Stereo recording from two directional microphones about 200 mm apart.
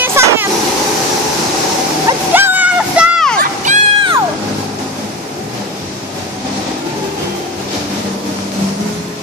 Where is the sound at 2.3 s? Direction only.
10° right (ahead or behind).